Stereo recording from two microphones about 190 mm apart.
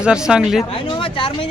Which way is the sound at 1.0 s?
25° left (ahead or behind).